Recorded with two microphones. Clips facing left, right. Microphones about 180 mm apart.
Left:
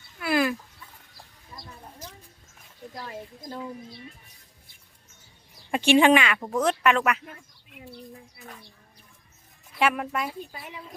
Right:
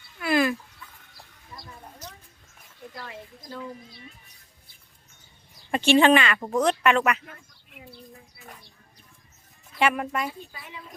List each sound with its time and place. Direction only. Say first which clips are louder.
0.2 s fowl: right 1 dB; 5° left (ahead or behind)
3.1 s speech: left 3 dB; 40° left (ahead or behind)
5.7 s speech: even; 10° left (ahead or behind)
9.7 s speech: right 1 dB; centre (ahead or behind)